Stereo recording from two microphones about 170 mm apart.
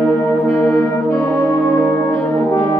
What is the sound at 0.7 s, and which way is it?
Brass instrument, 10° left (ahead or behind).